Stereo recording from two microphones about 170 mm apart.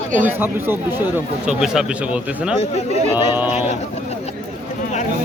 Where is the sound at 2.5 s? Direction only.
40° left (ahead or behind).